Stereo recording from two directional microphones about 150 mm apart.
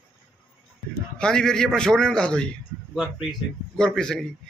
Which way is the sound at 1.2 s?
5° left (ahead or behind).